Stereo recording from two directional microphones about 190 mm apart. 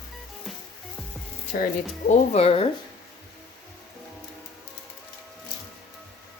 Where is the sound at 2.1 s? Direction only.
35° left (ahead or behind).